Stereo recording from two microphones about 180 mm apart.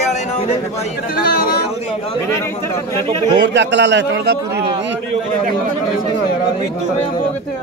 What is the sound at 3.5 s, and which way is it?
A man's voice, 80° right.